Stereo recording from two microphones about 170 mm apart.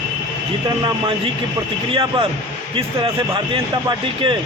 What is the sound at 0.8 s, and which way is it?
Speech, 30° right (ahead or behind).